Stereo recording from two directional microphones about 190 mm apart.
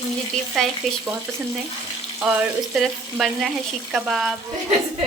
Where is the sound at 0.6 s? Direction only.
Centre (ahead or behind).